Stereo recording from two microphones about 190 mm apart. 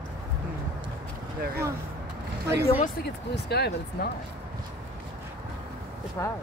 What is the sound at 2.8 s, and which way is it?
Speech, 55° left (ahead or behind).